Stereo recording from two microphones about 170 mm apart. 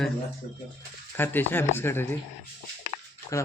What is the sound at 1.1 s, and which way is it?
Speech, 10° left (ahead or behind).